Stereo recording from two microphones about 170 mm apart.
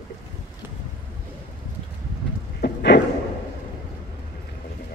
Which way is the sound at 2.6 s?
85° left.